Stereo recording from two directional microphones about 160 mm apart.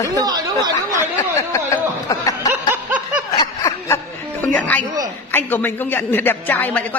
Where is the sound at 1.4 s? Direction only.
20° left (ahead or behind).